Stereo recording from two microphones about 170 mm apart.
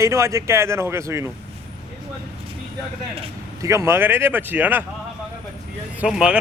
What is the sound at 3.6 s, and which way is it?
Speech, 15° right (ahead or behind).